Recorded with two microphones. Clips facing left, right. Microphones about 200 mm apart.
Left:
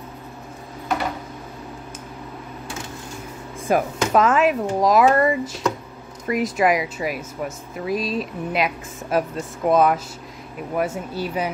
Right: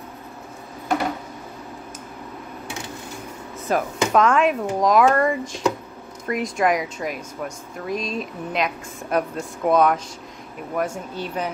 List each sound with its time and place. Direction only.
3.6 s speech: 5° left (ahead or behind)